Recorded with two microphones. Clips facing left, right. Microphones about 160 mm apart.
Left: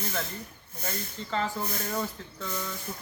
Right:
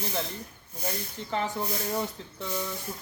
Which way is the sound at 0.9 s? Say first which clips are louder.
Right 1 dB; 15° right (ahead or behind).